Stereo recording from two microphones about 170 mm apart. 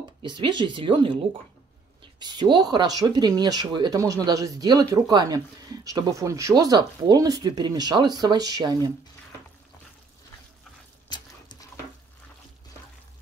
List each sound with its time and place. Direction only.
0.2 s speech: 30° right (ahead or behind)
11.1 s dog: 25° left (ahead or behind)